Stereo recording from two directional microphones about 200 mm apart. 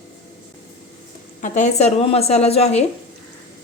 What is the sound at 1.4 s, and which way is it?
A woman's voice, 40° left (ahead or behind).